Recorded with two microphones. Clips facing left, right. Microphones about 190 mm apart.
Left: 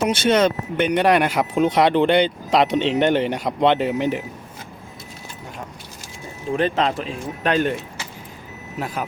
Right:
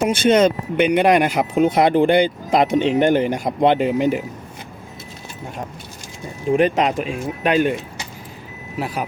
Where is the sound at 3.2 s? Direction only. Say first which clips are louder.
Right 2 dB; 45° right (ahead or behind).